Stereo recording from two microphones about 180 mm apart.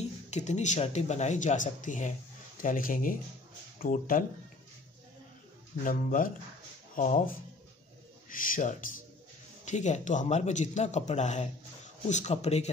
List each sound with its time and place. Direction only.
0.3 s speech: 40° left (ahead or behind)
5.9 s speech: 50° left (ahead or behind)
8.3 s speech: 45° left (ahead or behind)